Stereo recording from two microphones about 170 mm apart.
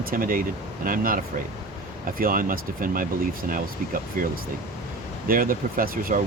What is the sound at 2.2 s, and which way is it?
Speech, 55° right (ahead or behind).